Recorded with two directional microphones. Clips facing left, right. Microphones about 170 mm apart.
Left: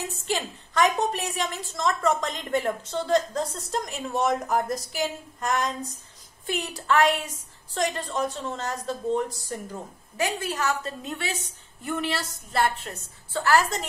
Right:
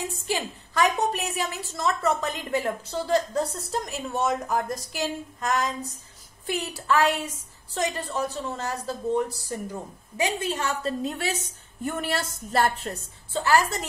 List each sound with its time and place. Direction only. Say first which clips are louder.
0.0 s a woman's voice: even; 10° right (ahead or behind); by 12.9 s 40° right (ahead or behind)
13.3 s a woman's voice: even; 15° right (ahead or behind)